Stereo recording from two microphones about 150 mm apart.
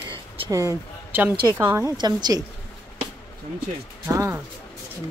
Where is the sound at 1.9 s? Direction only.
25° right (ahead or behind).